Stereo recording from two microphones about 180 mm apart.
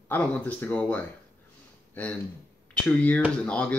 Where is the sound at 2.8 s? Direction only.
10° left (ahead or behind).